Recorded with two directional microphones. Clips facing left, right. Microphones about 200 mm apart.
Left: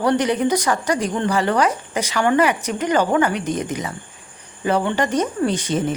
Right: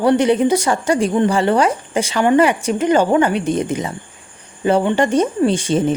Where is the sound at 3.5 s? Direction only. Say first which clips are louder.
Right 5 dB; 30° right (ahead or behind).